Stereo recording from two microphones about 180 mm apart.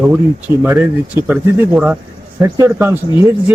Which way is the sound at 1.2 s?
10° right (ahead or behind).